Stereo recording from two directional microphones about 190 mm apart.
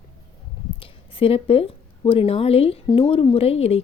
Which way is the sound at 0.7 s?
30° left (ahead or behind).